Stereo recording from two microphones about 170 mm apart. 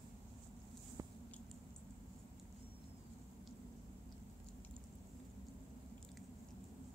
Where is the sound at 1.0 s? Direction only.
20° right (ahead or behind).